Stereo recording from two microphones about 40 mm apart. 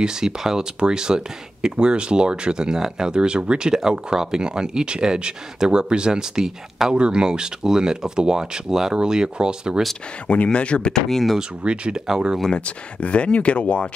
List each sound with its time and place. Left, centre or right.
0.0 s speech: centre
10.2 s speech: left
11.1 s speech: centre
11.6 s speech: right
12.4 s speech: left